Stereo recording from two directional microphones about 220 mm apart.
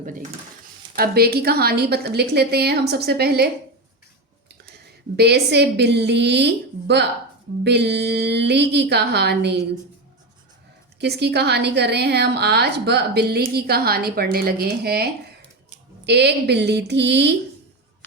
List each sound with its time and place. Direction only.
0.0 s a woman's voice: 35° right (ahead or behind)
4.8 s a woman's voice: 50° right (ahead or behind)
11.0 s a woman's voice: 50° right (ahead or behind)